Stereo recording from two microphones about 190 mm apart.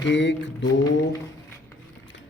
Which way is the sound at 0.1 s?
70° left (ahead or behind).